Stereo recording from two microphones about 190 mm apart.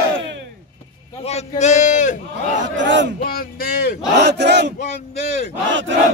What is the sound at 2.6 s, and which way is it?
Speech, 75° right (ahead or behind).